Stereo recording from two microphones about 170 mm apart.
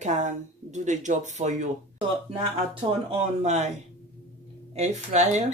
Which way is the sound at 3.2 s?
40° right (ahead or behind).